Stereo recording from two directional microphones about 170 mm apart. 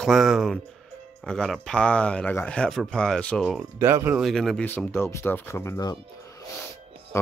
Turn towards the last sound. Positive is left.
turn(degrees=15)  # may be behind; listen again after turning